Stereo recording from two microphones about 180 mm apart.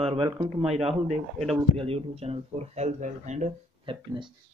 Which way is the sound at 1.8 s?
35° right (ahead or behind).